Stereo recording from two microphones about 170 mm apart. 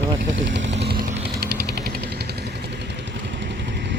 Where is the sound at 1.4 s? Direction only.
75° right (ahead or behind).